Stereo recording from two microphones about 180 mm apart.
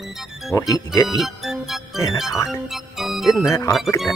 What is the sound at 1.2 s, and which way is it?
Music, centre (ahead or behind).